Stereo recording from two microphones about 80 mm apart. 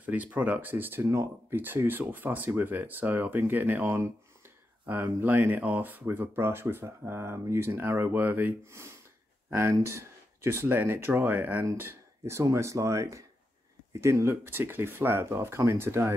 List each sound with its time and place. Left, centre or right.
0.0 s speech: centre
9.5 s speech: right